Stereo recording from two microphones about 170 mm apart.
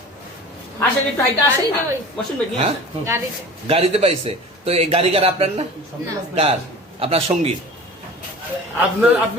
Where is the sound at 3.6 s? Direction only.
35° right (ahead or behind).